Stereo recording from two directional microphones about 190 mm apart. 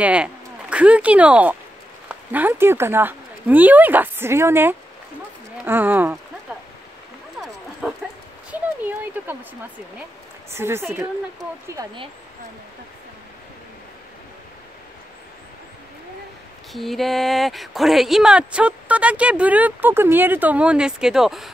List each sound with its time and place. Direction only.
0.0 s a woman's voice: 5° right (ahead or behind)
7.8 s dog: 10° right (ahead or behind)
8.5 s a sound: 10° right (ahead or behind)
10.5 s a woman's voice: 15° right (ahead or behind)
16.7 s speech: centre (ahead or behind)